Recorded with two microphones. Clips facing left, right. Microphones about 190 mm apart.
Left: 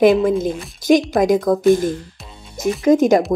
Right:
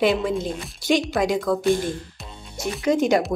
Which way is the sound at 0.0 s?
50° left (ahead or behind).